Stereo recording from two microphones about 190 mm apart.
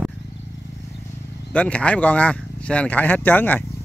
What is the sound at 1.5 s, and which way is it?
Speech, 5° left (ahead or behind).